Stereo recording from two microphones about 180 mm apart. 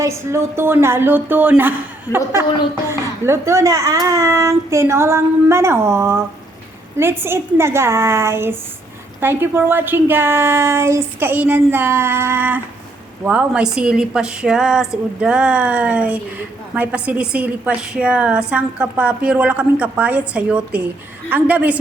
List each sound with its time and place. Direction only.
0.0 s a woman's voice: 15° right (ahead or behind)
2.1 s a woman's voice: 15° left (ahead or behind)
3.2 s a woman's voice: 15° right (ahead or behind)